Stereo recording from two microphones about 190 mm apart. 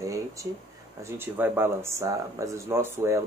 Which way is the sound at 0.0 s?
15° right (ahead or behind).